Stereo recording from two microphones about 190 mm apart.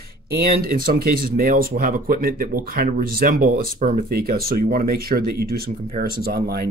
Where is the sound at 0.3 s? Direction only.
50° right (ahead or behind).